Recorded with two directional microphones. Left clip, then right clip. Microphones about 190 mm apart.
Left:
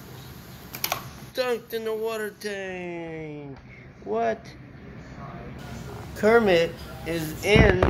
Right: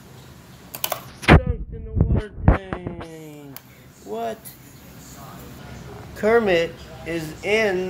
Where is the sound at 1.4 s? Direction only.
20° left (ahead or behind).